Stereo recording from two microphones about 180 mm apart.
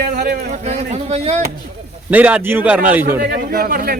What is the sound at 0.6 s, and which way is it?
Speech, 40° right (ahead or behind).